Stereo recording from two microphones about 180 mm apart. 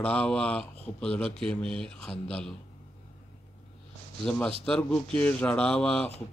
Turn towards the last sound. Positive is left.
turn(degrees=5)  # may be behind; listen again after turning